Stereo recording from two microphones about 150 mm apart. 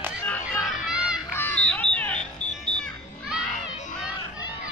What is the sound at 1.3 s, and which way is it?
Smoke detector, 10° left (ahead or behind).